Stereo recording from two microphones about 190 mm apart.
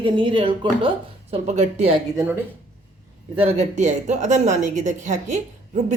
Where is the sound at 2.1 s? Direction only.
15° right (ahead or behind).